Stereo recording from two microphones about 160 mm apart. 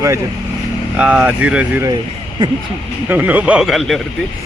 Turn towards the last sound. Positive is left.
turn(degrees=0)  # may be behind; listen again after turning